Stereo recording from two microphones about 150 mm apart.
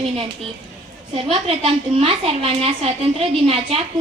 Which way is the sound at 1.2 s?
40° right (ahead or behind).